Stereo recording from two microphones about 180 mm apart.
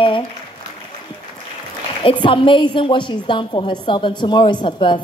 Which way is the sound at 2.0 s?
30° left (ahead or behind).